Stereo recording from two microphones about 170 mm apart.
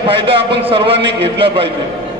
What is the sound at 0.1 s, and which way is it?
A man's voice, 30° right (ahead or behind).